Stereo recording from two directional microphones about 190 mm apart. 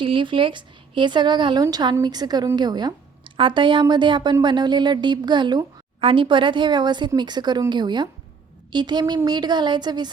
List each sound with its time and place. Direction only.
0.0 s a woman's voice: 25° right (ahead or behind)